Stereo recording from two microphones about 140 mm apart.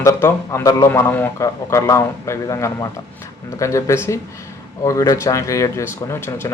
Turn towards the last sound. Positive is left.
turn(degrees=20)  # may be behind; listen again after turning